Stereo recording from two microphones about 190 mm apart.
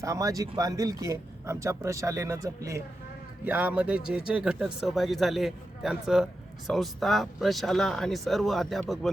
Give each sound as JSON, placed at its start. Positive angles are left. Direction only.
{"t": 0.0, "sound": "speech", "side_deg": -15}